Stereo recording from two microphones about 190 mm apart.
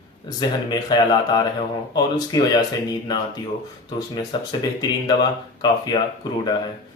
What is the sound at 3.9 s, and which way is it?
Speech, 20° left (ahead or behind).